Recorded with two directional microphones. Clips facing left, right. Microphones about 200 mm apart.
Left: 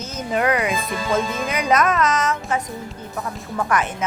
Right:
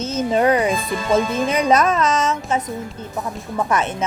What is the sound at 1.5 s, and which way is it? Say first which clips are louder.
Speech: right 1 dB; 30° right (ahead or behind).